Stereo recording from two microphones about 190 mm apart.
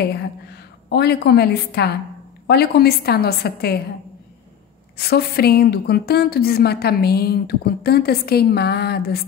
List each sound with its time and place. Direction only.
0.9 s a woman's voice: 60° left (ahead or behind)
4.9 s a woman's voice: 55° left (ahead or behind)